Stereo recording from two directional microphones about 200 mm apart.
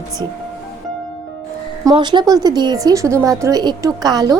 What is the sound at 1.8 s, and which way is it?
A woman's voice, 20° right (ahead or behind).